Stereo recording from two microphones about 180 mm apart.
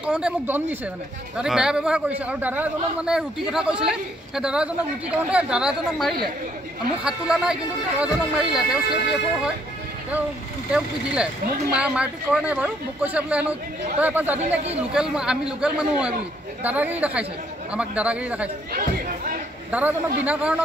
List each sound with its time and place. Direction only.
0.0 s a man's voice: 5° right (ahead or behind)
10.7 s a man's voice: 5° right (ahead or behind)
18.7 s chatter: 50° right (ahead or behind)
19.7 s speech: 10° right (ahead or behind)